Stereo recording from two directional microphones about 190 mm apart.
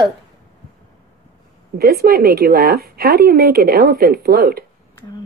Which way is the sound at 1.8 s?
50° right (ahead or behind).